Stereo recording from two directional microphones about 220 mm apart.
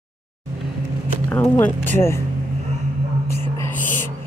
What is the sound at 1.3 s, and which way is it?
Speech, 10° left (ahead or behind).